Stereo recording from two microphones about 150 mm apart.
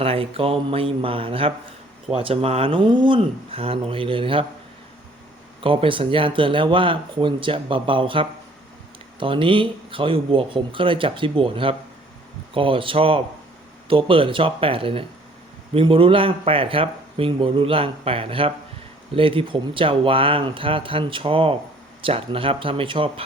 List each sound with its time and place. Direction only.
0.0 s speech: 40° right (ahead or behind)
5.6 s speech: 35° right (ahead or behind)